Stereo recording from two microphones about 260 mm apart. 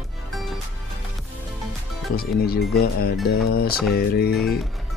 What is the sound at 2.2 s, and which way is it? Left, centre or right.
Speech, left.